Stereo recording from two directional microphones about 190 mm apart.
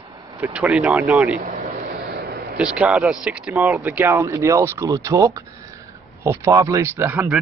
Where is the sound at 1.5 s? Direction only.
45° right (ahead or behind).